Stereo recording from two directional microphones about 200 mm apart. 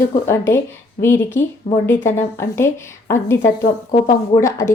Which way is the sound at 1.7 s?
30° left (ahead or behind).